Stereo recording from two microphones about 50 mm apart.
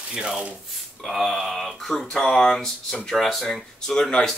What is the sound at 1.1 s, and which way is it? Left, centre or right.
Speech, centre.